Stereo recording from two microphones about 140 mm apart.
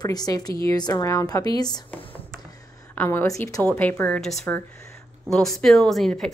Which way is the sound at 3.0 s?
15° left (ahead or behind).